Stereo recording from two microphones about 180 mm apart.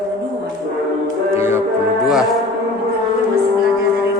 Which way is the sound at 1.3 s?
15° right (ahead or behind).